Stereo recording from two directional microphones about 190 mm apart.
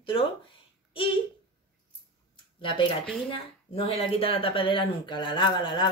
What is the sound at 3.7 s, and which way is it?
Speech, 30° left (ahead or behind).